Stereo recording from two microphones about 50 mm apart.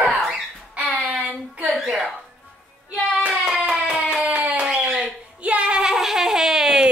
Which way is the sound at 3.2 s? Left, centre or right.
Right.